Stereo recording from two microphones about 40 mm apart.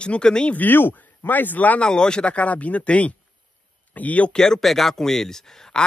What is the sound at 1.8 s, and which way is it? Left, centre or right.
Speech, left.